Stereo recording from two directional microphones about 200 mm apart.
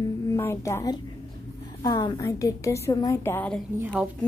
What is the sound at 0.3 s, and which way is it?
A woman's voice, 15° left (ahead or behind).